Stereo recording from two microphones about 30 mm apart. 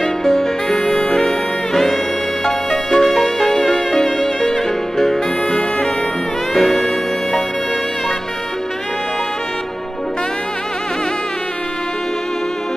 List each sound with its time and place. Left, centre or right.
0.0 s music: centre
0.7 s music: left
2.9 s music: centre
5.5 s saxophone: left
6.5 s music: centre